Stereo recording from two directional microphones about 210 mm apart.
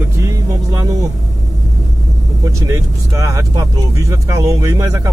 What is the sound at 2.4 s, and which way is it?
Speech, 15° right (ahead or behind).